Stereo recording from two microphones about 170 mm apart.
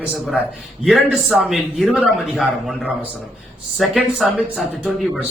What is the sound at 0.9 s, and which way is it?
A man's voice, centre (ahead or behind).